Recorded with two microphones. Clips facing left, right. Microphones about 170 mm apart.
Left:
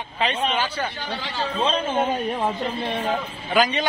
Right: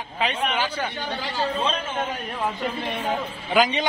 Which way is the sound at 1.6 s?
30° left (ahead or behind).